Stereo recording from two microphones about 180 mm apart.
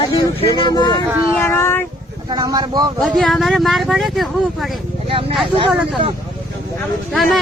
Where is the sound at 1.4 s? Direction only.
15° left (ahead or behind).